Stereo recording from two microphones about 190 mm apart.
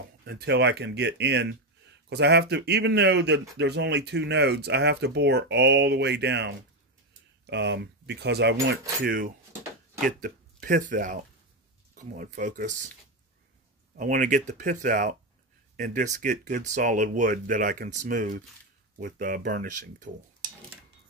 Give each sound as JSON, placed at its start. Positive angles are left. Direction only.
{"t": 0.2, "sound": "a man's voice", "side_deg": -60}
{"t": 13.9, "sound": "speech", "side_deg": -45}